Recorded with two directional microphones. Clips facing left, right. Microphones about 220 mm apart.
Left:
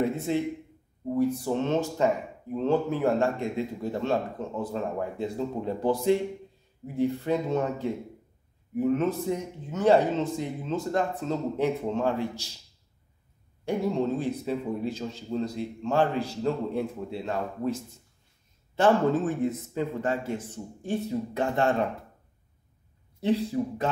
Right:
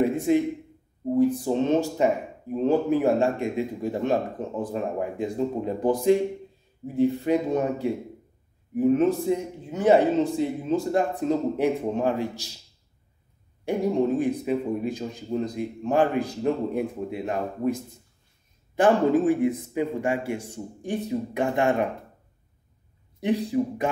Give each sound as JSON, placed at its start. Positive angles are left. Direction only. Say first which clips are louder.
{"t": 0.1, "sound": "a sound", "louder": "right 6 dB", "side_deg": -15}
{"t": 1.4, "sound": "speech", "louder": "right 4 dB", "side_deg": -15}
{"t": 13.8, "sound": "speech", "louder": "right 5 dB", "side_deg": -15}
{"t": 18.8, "sound": "speech", "louder": "right 3 dB", "side_deg": -15}
{"t": 23.2, "sound": "speech", "louder": "right 2 dB", "side_deg": -15}